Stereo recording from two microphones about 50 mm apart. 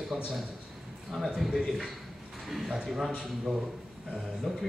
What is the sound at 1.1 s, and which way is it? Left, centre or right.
Speech, centre.